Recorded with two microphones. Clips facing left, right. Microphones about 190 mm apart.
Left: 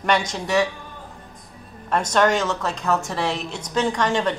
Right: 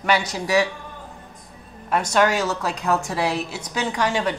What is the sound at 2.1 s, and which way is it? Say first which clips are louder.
A woman's voice: left 1 dB; 5° right (ahead or behind).